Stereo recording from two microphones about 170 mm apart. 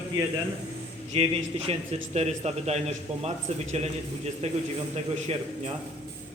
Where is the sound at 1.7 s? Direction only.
35° right (ahead or behind).